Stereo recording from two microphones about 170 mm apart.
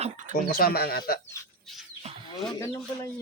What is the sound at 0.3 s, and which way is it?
Speech, 60° left (ahead or behind).